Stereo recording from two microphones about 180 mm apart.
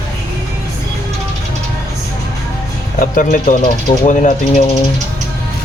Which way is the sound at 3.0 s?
45° left (ahead or behind).